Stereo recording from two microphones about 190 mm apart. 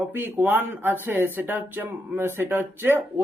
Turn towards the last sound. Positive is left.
turn(degrees=-10)  # may be behind; listen again after turning